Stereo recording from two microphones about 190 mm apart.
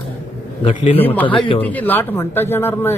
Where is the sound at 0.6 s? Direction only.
30° left (ahead or behind).